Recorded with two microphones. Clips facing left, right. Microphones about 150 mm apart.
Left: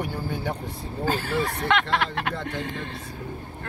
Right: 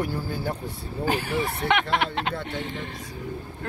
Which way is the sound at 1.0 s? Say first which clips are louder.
Even; 15° right (ahead or behind).